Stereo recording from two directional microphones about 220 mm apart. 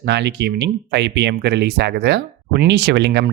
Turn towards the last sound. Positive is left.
turn(degrees=-50)  # may be behind; listen again after turning